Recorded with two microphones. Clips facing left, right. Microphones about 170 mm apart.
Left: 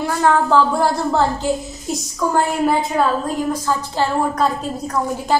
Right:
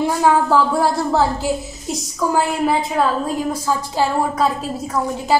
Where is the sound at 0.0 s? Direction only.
10° right (ahead or behind).